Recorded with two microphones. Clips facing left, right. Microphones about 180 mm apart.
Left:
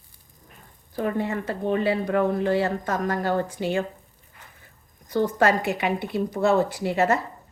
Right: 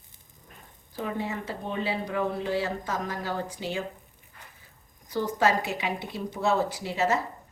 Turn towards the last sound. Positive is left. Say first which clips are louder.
# left 5 dB
turn(degrees=55)  # may be behind; listen again after turning